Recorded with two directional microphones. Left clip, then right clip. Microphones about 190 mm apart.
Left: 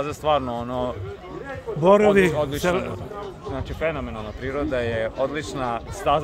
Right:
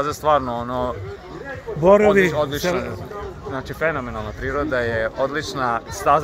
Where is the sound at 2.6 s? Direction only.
20° left (ahead or behind).